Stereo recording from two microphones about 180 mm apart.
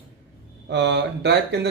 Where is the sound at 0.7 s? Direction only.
75° right (ahead or behind).